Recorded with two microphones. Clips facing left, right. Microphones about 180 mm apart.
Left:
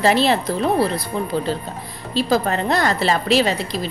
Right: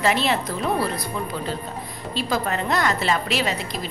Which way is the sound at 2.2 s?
35° left (ahead or behind).